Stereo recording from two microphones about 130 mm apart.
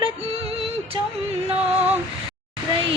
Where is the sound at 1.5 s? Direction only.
50° right (ahead or behind).